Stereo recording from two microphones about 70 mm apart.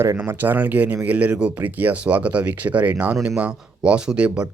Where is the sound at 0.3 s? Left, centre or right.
Right.